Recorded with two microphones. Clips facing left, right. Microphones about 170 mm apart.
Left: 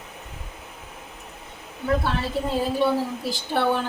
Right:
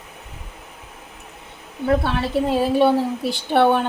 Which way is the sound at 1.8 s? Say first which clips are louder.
Right 4 dB; 65° right (ahead or behind).